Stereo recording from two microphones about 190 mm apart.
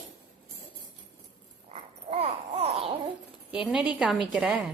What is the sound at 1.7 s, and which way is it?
Babbling, 35° right (ahead or behind).